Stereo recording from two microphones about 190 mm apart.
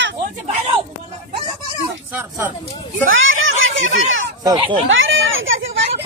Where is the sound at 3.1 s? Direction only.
90° right.